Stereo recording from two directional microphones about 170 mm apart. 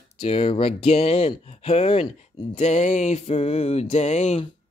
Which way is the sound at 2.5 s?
40° left (ahead or behind).